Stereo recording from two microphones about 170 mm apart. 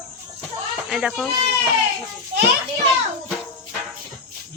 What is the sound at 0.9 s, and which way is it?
Speech, centre (ahead or behind).